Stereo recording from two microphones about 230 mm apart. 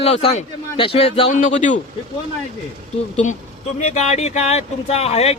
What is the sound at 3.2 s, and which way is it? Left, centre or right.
A man's voice, left.